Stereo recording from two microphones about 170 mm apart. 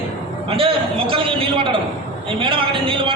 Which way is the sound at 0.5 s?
30° right (ahead or behind).